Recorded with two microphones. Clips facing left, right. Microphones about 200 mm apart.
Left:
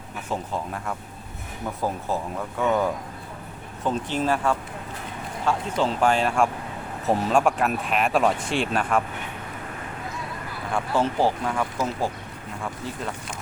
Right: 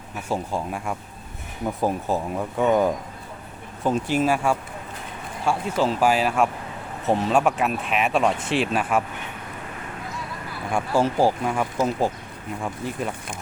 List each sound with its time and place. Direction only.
0.3 s speech: 10° right (ahead or behind)
10.7 s speech: 15° right (ahead or behind)